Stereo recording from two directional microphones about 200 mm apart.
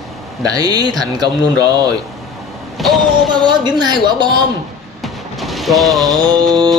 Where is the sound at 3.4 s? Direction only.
20° right (ahead or behind).